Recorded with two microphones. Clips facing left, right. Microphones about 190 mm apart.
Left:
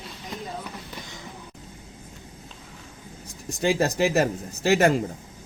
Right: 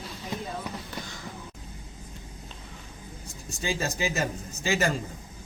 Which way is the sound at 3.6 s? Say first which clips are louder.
Left 8 dB; 65° left (ahead or behind).